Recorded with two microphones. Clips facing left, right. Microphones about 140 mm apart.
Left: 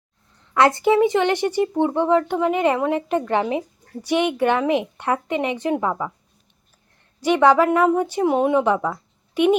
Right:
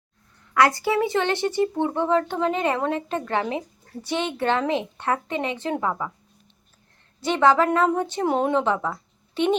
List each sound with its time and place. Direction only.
0.5 s speech: 25° left (ahead or behind)
7.2 s speech: 15° left (ahead or behind)